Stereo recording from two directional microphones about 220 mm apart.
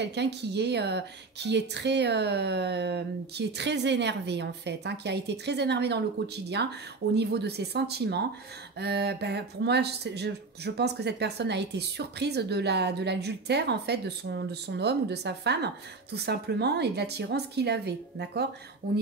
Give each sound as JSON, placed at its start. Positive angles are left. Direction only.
{"t": 0.0, "sound": "speech", "side_deg": -50}